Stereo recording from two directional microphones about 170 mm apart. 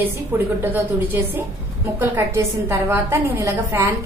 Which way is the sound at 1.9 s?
15° right (ahead or behind).